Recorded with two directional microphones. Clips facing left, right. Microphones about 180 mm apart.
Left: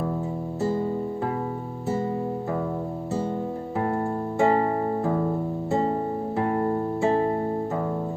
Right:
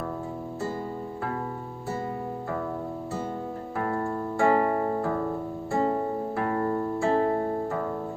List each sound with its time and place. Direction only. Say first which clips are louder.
3.8 s music: left 2 dB; 20° left (ahead or behind)
6.3 s music: left 4 dB; 20° left (ahead or behind)